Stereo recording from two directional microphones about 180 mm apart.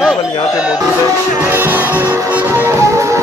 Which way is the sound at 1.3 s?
10° right (ahead or behind).